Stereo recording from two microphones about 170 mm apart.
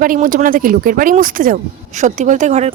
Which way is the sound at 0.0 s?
55° right (ahead or behind).